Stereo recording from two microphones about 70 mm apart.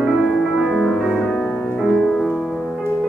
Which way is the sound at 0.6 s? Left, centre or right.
Centre.